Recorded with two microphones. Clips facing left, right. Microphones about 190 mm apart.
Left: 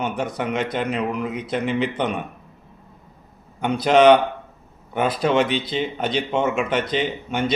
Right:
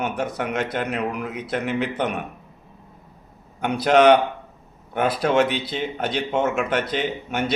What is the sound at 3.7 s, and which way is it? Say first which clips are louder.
Speech: even; 55° right (ahead or behind).